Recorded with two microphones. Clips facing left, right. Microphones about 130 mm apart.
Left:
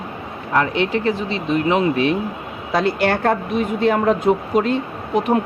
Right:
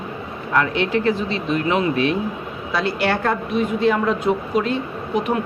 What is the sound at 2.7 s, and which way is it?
A woman's voice, 45° left (ahead or behind).